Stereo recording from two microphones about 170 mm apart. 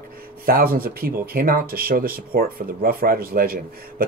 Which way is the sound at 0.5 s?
60° right (ahead or behind).